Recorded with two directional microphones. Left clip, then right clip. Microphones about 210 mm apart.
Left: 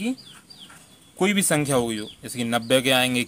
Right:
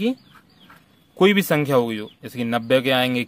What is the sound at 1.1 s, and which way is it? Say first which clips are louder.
Speech: right 5 dB; 30° right (ahead or behind).